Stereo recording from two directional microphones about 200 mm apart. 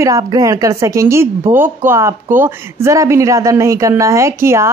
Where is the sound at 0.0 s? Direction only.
15° right (ahead or behind).